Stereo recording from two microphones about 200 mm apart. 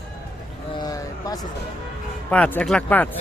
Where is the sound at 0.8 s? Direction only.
20° left (ahead or behind).